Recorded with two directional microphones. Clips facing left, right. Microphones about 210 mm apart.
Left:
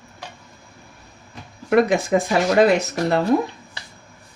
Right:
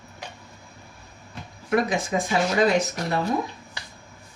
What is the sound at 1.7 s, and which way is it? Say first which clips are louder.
Speech: left 7 dB; 60° left (ahead or behind).